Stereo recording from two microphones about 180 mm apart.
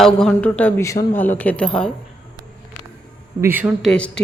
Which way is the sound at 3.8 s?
5° left (ahead or behind).